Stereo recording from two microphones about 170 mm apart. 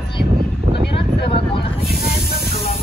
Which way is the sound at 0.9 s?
30° left (ahead or behind).